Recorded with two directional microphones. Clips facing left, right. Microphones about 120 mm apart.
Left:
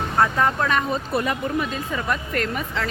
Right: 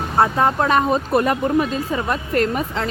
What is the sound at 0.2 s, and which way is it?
A woman's voice, 30° right (ahead or behind).